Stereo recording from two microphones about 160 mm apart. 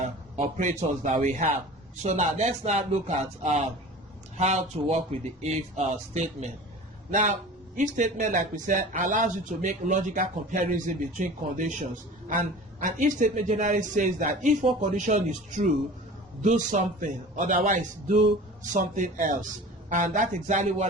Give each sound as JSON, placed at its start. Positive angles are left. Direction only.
{"t": 0.3, "sound": "speech", "side_deg": -50}